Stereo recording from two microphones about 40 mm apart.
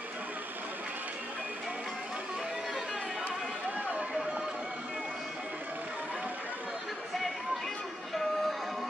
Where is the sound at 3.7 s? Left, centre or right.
Right.